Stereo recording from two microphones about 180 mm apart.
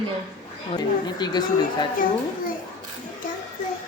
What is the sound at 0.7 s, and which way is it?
Speech, 25° left (ahead or behind).